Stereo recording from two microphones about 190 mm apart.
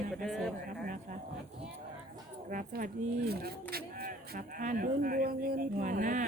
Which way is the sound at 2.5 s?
50° right (ahead or behind).